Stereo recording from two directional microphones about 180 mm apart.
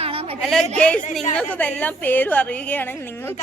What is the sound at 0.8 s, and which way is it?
A woman's voice, 5° left (ahead or behind).